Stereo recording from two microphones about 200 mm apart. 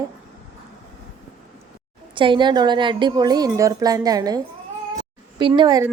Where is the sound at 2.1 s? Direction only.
25° right (ahead or behind).